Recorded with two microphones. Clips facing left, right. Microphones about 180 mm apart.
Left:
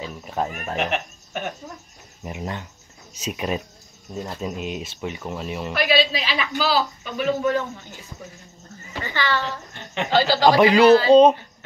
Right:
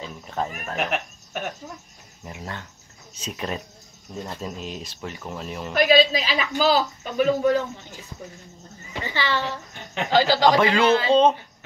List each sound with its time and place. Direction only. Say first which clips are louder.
0.0 s goat: left 2 dB; 10° left (ahead or behind)
0.7 s speech: left 1 dB; 5° right (ahead or behind)
2.2 s a man's voice: left 5 dB; 20° left (ahead or behind)
5.7 s speech: right 4 dB; 45° right (ahead or behind)
9.0 s a child's voice: left 1 dB; 20° right (ahead or behind)
10.4 s a man's voice: left 4 dB; 15° left (ahead or behind)